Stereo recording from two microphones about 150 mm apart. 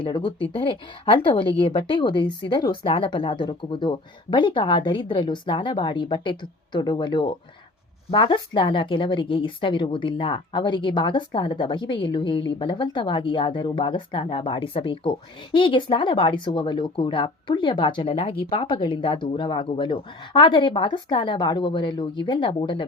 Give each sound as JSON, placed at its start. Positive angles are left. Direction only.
{"t": 0.0, "sound": "speech", "side_deg": 30}